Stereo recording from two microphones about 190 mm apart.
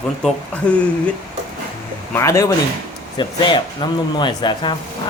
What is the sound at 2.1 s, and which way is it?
Speech, 15° left (ahead or behind).